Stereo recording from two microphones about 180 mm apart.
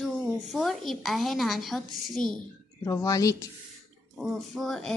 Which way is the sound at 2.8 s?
20° left (ahead or behind).